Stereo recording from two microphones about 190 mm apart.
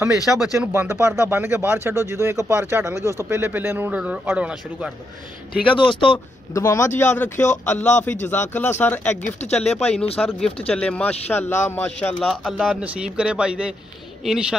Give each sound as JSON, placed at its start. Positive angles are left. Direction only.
{"t": 0.0, "sound": "a man's voice", "side_deg": 0}
{"t": 0.7, "sound": "speech", "side_deg": -15}
{"t": 5.7, "sound": "speech", "side_deg": 25}
{"t": 6.1, "sound": "speech", "side_deg": 15}
{"t": 9.1, "sound": "speech", "side_deg": 40}
{"t": 9.5, "sound": "speech", "side_deg": 5}
{"t": 10.0, "sound": "speech", "side_deg": 30}
{"t": 10.8, "sound": "speech", "side_deg": 5}
{"t": 12.2, "sound": "a man's voice", "side_deg": 0}